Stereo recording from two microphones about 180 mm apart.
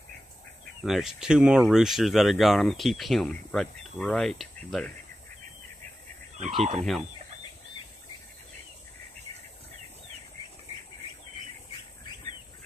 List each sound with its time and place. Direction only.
0.8 s speech: centre (ahead or behind)
6.6 s fowl: 40° right (ahead or behind)